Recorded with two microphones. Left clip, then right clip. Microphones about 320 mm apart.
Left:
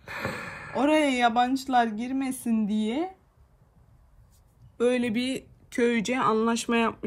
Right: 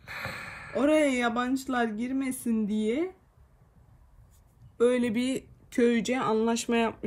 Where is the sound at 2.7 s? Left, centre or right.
Left.